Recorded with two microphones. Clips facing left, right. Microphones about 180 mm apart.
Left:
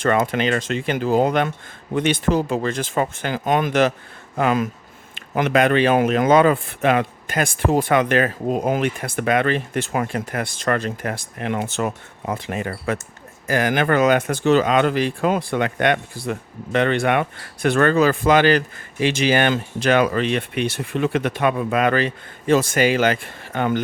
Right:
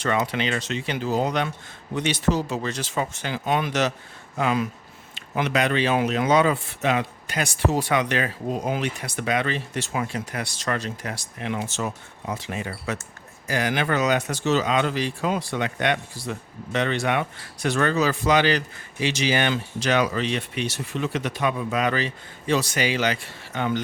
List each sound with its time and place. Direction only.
0.0 s speech: 50° left (ahead or behind)